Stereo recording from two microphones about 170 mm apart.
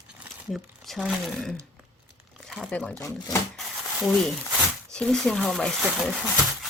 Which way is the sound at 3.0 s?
20° left (ahead or behind).